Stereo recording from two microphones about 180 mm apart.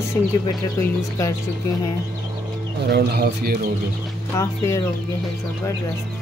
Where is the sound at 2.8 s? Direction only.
65° right (ahead or behind).